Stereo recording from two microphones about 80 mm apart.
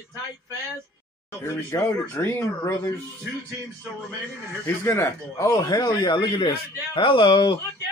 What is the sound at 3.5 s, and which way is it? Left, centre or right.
Speech, right.